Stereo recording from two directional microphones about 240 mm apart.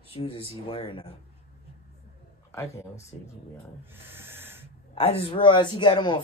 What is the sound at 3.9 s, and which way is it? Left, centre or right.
Owl, centre.